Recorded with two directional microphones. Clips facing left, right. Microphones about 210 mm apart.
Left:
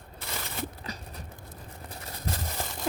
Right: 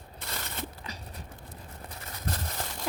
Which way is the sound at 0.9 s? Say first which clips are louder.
Left 3 dB; 35° left (ahead or behind).